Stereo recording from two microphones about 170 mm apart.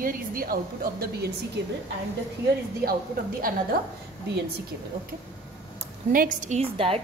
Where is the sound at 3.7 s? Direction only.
60° right (ahead or behind).